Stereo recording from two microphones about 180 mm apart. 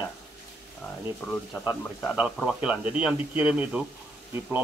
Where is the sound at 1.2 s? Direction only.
10° left (ahead or behind).